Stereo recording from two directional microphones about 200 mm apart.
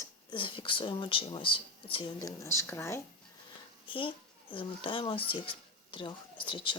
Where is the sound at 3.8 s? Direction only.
25° left (ahead or behind).